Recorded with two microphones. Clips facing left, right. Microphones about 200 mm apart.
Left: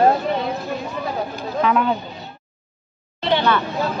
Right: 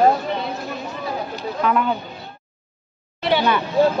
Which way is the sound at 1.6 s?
Centre (ahead or behind).